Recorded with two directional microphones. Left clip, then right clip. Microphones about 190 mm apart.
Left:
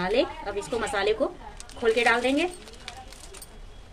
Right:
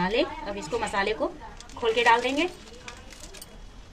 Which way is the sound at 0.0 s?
20° left (ahead or behind).